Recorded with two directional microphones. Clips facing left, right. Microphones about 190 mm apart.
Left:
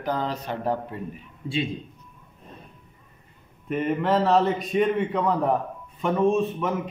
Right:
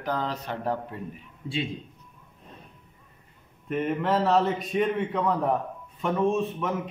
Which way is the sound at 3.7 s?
Centre (ahead or behind).